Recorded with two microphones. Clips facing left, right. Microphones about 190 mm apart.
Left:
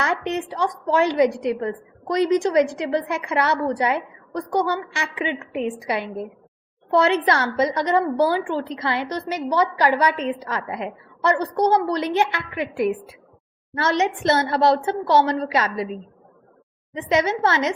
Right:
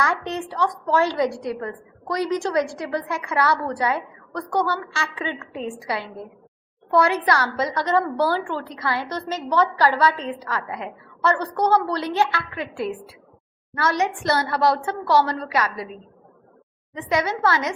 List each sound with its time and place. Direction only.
0.0 s a woman's voice: 20° left (ahead or behind)